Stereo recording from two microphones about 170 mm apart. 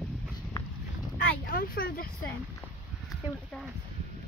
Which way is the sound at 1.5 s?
60° left (ahead or behind).